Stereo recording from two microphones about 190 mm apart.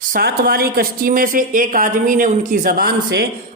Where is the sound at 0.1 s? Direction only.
55° right (ahead or behind).